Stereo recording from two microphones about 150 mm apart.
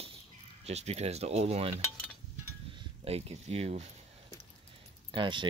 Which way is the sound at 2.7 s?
40° right (ahead or behind).